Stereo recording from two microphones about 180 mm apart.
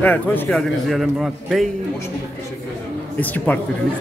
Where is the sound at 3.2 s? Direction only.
10° left (ahead or behind).